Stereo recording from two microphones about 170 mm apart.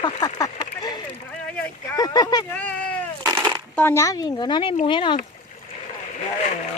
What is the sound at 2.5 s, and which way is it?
Speech, 10° left (ahead or behind).